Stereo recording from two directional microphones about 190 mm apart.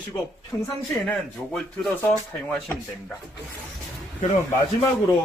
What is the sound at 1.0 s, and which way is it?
Speech, 5° left (ahead or behind).